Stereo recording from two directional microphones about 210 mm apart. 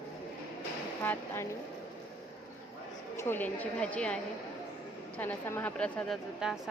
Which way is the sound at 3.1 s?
10° left (ahead or behind).